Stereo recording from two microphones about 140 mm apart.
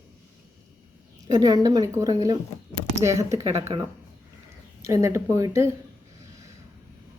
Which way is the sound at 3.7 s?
35° right (ahead or behind).